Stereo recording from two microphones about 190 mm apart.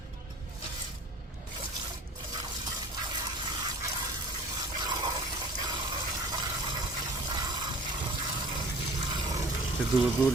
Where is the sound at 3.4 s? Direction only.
20° right (ahead or behind).